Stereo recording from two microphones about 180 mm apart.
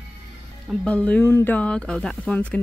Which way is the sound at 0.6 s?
5° left (ahead or behind).